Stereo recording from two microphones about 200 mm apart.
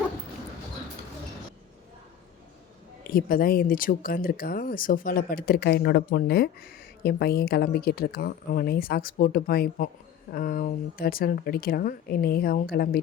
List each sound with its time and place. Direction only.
3.1 s speech: 45° left (ahead or behind)